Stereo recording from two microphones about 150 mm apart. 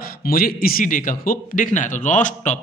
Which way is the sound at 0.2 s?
75° left (ahead or behind).